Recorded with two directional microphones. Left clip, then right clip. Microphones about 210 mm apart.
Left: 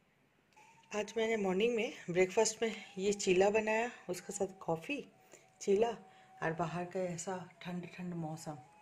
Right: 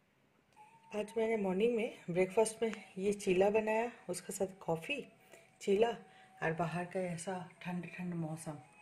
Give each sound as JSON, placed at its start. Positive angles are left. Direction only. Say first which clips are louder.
{"t": 0.8, "sound": "speech", "louder": "even", "side_deg": -5}